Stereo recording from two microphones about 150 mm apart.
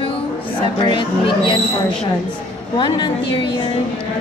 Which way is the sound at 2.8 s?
30° left (ahead or behind).